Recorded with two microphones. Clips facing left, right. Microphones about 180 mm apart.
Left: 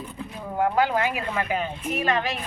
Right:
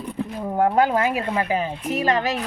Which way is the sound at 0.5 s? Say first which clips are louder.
Right 3 dB; 45° right (ahead or behind).